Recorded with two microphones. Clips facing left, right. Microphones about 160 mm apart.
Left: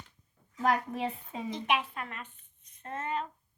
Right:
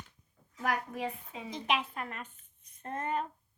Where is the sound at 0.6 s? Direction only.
30° left (ahead or behind).